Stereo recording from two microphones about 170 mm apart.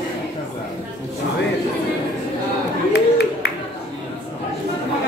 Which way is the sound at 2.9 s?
70° left (ahead or behind).